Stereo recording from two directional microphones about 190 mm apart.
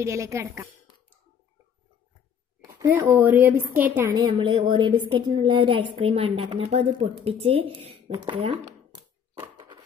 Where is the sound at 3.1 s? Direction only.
10° right (ahead or behind).